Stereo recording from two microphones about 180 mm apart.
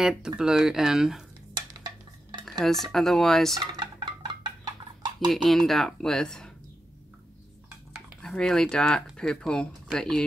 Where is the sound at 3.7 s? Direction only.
25° right (ahead or behind).